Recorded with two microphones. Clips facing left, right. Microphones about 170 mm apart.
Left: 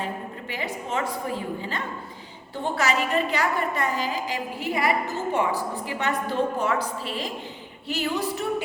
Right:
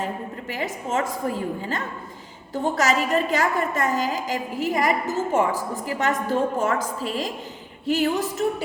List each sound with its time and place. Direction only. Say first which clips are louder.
0.5 s a woman's voice: right 3 dB; 45° right (ahead or behind)